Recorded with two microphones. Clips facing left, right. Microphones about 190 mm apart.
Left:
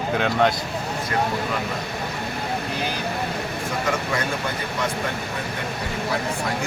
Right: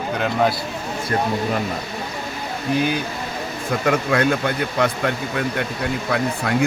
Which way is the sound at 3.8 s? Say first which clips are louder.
Right 9 dB; 60° right (ahead or behind).